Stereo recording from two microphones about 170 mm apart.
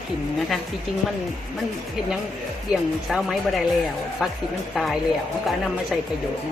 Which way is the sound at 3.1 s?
Centre (ahead or behind).